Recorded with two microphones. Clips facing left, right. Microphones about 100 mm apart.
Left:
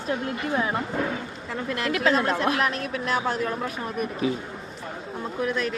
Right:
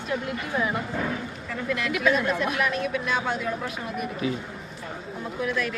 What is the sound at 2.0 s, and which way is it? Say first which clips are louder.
Speech: left 1 dB; 70° left (ahead or behind).